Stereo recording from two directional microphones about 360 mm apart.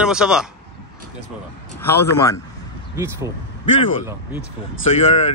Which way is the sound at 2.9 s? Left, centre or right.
Centre.